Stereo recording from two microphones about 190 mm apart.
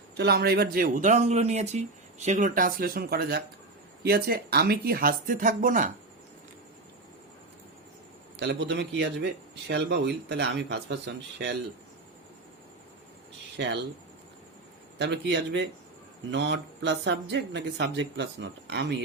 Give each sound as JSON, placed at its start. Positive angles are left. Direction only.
{"t": 0.2, "sound": "speech", "side_deg": -55}
{"t": 8.4, "sound": "speech", "side_deg": -65}
{"t": 13.6, "sound": "speech", "side_deg": -65}
{"t": 14.9, "sound": "speech", "side_deg": -65}